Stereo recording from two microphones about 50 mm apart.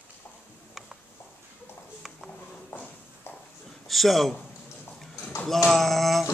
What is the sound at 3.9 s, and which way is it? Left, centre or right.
Speech, centre.